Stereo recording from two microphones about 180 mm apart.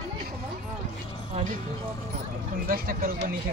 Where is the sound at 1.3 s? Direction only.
45° right (ahead or behind).